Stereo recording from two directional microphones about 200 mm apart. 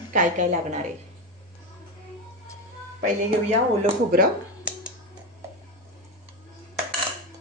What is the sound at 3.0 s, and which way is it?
Speech, 35° right (ahead or behind).